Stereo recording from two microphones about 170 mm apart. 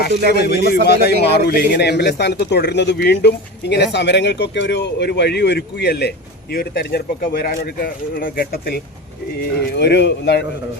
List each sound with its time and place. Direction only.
0.1 s a man's voice: 60° right (ahead or behind)
0.3 s a man's voice: 70° left (ahead or behind)
9.6 s speech: 85° left